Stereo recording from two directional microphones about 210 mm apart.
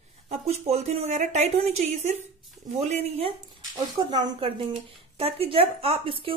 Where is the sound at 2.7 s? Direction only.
30° right (ahead or behind).